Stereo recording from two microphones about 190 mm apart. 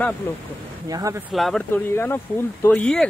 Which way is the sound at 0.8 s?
20° right (ahead or behind).